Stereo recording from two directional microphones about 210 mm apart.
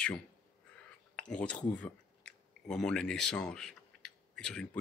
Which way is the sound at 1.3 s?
5° left (ahead or behind).